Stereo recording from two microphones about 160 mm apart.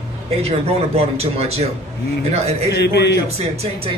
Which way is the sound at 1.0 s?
40° right (ahead or behind).